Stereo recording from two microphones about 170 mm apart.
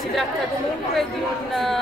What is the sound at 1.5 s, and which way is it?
Speech, centre (ahead or behind).